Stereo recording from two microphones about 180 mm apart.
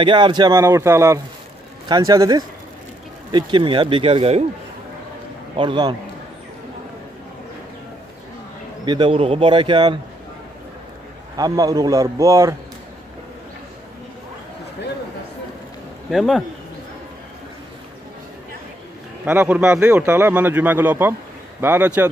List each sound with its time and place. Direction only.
0.0 s a man's voice: 25° right (ahead or behind)
5.6 s a man's voice: 25° right (ahead or behind)
8.8 s a man's voice: 25° right (ahead or behind)
11.3 s a man's voice: 20° right (ahead or behind)
16.1 s speech: centre (ahead or behind)
19.2 s a man's voice: 10° right (ahead or behind)